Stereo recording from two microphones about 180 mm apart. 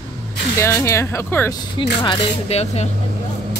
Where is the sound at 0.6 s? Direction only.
15° left (ahead or behind).